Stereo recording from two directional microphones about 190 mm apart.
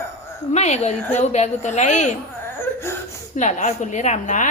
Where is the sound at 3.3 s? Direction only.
40° left (ahead or behind).